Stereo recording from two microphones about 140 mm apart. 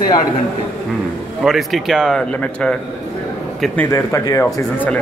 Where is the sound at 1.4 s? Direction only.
Centre (ahead or behind).